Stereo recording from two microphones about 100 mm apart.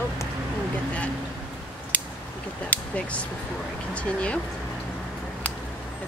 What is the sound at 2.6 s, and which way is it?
Speech, 15° left (ahead or behind).